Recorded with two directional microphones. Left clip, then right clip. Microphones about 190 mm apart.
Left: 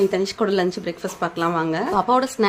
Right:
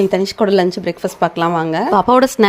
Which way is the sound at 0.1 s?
25° right (ahead or behind).